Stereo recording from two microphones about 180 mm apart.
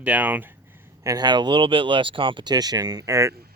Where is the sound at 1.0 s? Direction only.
20° right (ahead or behind).